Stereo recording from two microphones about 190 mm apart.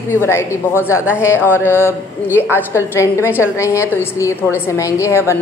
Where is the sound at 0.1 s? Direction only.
10° left (ahead or behind).